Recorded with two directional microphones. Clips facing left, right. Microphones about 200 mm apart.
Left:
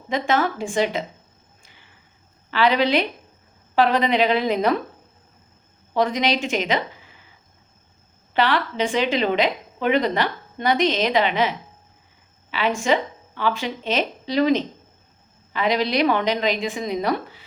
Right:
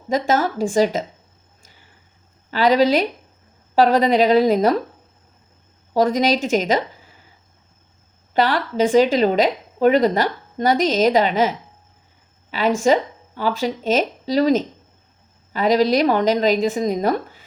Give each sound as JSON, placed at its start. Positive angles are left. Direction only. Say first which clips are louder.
{"t": 0.1, "sound": "a woman's voice", "louder": "right 3 dB", "side_deg": -40}
{"t": 1.6, "sound": "a sound", "louder": "right 3 dB", "side_deg": -40}
{"t": 2.5, "sound": "a woman's voice", "louder": "right 4 dB", "side_deg": -40}
{"t": 5.9, "sound": "speech", "louder": "right 4 dB", "side_deg": -40}
{"t": 8.3, "sound": "a woman's voice", "louder": "right 2 dB", "side_deg": -40}
{"t": 12.5, "sound": "a sound", "louder": "right 4 dB", "side_deg": -40}
{"t": 12.8, "sound": "a woman's voice", "louder": "right 4 dB", "side_deg": -40}